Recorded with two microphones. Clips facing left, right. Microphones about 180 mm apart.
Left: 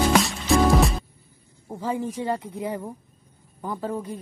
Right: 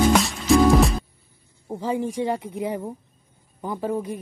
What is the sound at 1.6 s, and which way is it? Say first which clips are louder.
A woman's voice: right 2 dB; 15° right (ahead or behind).